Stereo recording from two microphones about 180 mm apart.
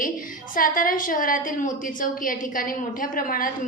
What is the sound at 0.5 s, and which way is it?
A woman's voice, 50° left (ahead or behind).